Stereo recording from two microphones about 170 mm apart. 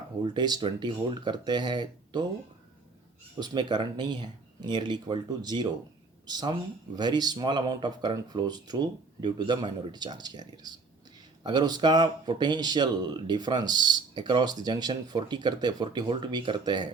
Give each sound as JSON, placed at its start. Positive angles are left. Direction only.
{"t": 0.2, "sound": "speech", "side_deg": -25}
{"t": 3.4, "sound": "speech", "side_deg": -25}